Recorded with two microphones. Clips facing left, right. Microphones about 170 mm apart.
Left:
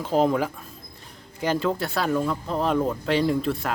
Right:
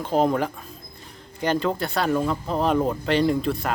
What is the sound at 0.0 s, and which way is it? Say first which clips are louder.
Speech: even; centre (ahead or behind).